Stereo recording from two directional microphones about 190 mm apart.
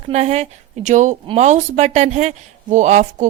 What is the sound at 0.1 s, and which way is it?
Speech, 35° right (ahead or behind).